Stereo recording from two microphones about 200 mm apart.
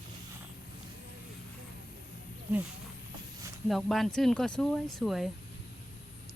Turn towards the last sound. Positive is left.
turn(degrees=0)  # may be behind; listen again after turning